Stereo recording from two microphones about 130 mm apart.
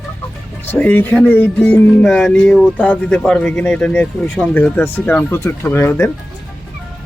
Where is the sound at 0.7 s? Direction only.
15° left (ahead or behind).